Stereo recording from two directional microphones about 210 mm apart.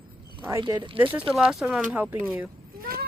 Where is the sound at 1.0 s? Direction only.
10° right (ahead or behind).